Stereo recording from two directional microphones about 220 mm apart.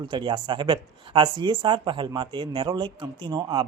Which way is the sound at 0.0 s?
20° right (ahead or behind).